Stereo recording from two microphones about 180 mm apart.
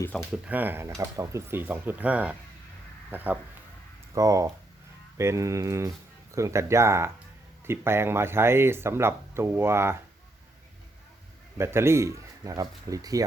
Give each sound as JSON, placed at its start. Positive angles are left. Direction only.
{"t": 0.0, "sound": "speech", "side_deg": 15}
{"t": 0.4, "sound": "speech", "side_deg": -10}
{"t": 11.5, "sound": "speech", "side_deg": -15}